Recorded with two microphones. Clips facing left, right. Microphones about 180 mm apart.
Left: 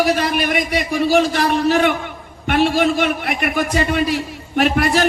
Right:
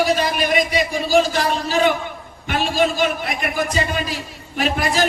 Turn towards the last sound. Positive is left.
turn(degrees=65)  # may be behind; listen again after turning